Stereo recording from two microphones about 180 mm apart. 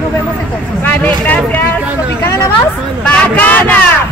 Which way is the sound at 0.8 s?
10° left (ahead or behind).